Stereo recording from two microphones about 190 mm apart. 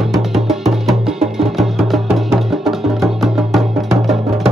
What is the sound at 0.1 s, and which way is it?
Music, centre (ahead or behind).